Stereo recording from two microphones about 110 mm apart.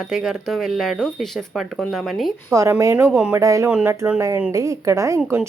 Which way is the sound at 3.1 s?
10° right (ahead or behind).